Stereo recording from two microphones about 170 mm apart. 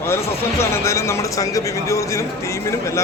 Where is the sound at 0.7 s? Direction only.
15° left (ahead or behind).